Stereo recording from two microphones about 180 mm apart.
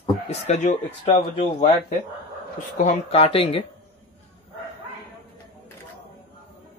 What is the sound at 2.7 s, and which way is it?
Speech, 40° left (ahead or behind).